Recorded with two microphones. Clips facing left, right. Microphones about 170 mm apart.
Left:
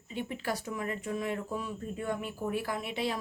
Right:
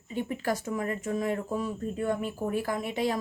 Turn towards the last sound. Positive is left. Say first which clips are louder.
# right 4 dB
turn(degrees=-45)  # may be behind; listen again after turning